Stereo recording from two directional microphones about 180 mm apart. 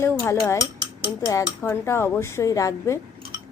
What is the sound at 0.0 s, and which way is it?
Speech, 15° left (ahead or behind).